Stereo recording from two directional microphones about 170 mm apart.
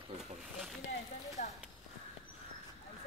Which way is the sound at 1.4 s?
45° left (ahead or behind).